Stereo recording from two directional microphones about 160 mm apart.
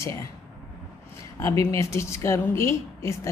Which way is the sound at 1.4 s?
20° left (ahead or behind).